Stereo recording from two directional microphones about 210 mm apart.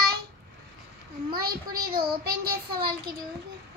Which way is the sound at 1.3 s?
45° right (ahead or behind).